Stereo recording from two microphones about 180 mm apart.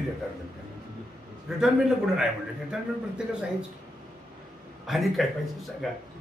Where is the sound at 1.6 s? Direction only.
Centre (ahead or behind).